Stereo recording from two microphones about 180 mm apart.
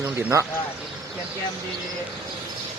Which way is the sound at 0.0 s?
15° right (ahead or behind).